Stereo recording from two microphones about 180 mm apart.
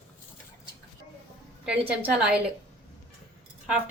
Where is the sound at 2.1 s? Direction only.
5° right (ahead or behind).